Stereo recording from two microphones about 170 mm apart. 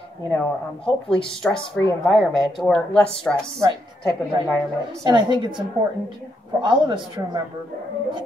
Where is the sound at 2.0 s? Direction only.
Centre (ahead or behind).